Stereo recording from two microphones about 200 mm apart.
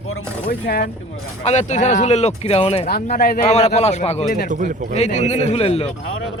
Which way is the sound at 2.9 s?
45° left (ahead or behind).